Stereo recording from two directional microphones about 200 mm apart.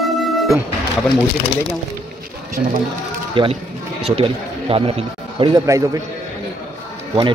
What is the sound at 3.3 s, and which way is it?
Speech, 25° right (ahead or behind).